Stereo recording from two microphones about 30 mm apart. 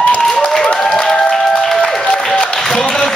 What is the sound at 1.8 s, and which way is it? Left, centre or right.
Music, left.